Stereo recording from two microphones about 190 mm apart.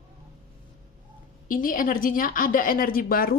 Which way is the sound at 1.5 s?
45° left (ahead or behind).